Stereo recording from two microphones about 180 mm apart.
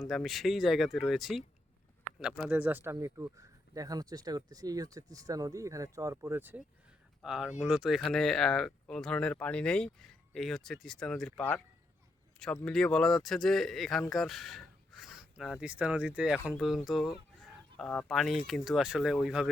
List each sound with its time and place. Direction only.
0.0 s speech: centre (ahead or behind)
12.6 s speech: 5° left (ahead or behind)